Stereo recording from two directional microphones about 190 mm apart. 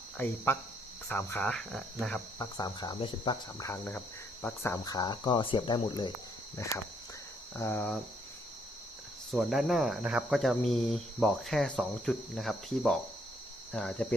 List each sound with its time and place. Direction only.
1.0 s speech: 10° left (ahead or behind)
2.4 s cricket: 20° left (ahead or behind)
4.4 s speech: 10° left (ahead or behind)
4.9 s cricket: 20° left (ahead or behind)
7.5 s speech: 10° left (ahead or behind)
9.3 s speech: centre (ahead or behind)